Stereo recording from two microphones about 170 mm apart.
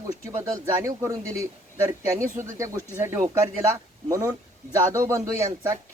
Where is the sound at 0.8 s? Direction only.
20° right (ahead or behind).